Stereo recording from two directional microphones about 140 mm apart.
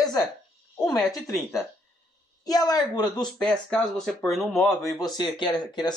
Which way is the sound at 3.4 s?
5° left (ahead or behind).